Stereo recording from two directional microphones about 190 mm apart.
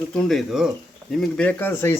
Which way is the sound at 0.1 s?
Centre (ahead or behind).